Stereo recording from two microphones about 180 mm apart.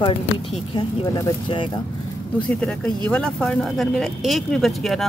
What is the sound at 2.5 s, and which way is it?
Speech, 5° left (ahead or behind).